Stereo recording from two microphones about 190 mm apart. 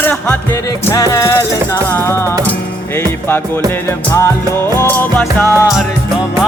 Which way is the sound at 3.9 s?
15° left (ahead or behind).